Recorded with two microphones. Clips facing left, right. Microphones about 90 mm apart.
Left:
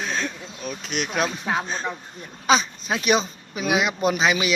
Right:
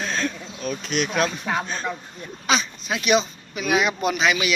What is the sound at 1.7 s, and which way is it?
Speech, 25° left (ahead or behind).